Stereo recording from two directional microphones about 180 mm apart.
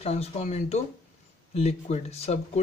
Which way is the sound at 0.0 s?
35° left (ahead or behind).